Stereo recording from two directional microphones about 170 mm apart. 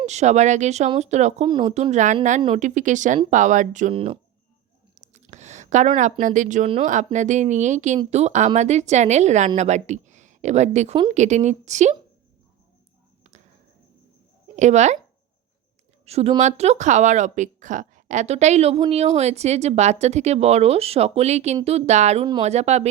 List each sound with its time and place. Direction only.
0.0 s a woman's voice: 40° right (ahead or behind)
1.5 s speech: 25° right (ahead or behind)
1.7 s a woman's voice: 45° right (ahead or behind)
3.9 s speech: 35° right (ahead or behind)
4.9 s a sound: 40° right (ahead or behind)
6.0 s a woman's voice: 45° right (ahead or behind)
14.4 s speech: 45° right (ahead or behind)
16.0 s a woman's voice: 35° right (ahead or behind)